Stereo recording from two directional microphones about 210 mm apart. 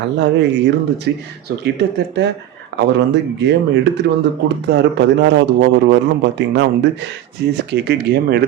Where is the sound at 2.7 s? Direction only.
55° right (ahead or behind).